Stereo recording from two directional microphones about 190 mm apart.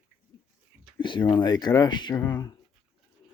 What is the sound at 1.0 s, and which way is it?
Speech, 25° left (ahead or behind).